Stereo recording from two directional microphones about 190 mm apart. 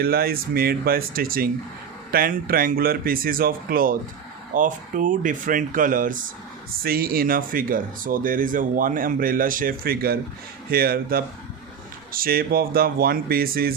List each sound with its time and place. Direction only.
0.0 s speech: 55° right (ahead or behind)